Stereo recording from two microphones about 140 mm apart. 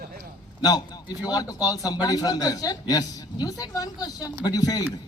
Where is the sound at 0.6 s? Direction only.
30° left (ahead or behind).